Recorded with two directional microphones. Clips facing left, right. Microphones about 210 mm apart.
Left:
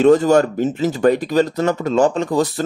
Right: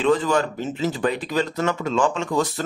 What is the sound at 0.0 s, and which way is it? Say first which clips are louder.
Speech: left 8 dB; 45° left (ahead or behind).